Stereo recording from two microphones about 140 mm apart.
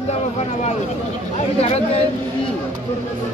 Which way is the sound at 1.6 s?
45° left (ahead or behind).